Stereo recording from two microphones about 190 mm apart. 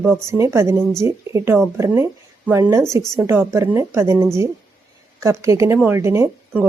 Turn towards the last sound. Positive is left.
turn(degrees=-15)  # may be behind; listen again after turning